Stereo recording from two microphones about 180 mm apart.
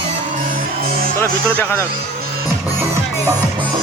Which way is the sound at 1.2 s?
15° left (ahead or behind).